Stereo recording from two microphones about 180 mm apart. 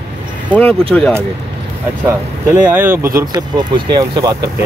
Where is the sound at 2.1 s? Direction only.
10° right (ahead or behind).